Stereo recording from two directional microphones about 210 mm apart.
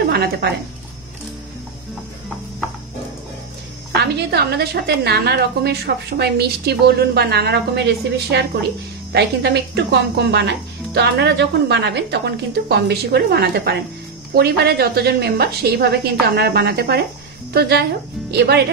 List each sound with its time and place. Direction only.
0.1 s speech: 50° right (ahead or behind)
4.0 s a woman's voice: 50° right (ahead or behind)